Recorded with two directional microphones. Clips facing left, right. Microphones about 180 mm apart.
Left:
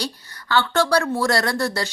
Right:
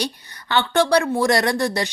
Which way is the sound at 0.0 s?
20° right (ahead or behind).